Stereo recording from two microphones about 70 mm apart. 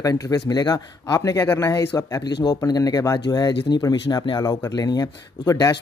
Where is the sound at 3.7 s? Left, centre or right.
Left.